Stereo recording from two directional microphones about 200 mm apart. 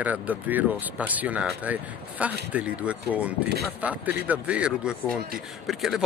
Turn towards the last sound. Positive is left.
turn(degrees=0)  # may be behind; listen again after turning